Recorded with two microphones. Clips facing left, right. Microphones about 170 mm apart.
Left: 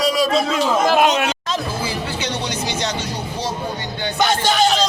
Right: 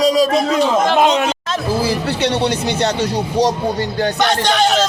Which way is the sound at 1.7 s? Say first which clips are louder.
Right 7 dB; 75° right (ahead or behind).